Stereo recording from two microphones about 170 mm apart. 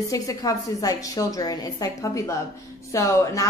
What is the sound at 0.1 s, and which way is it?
A woman's voice, 20° left (ahead or behind).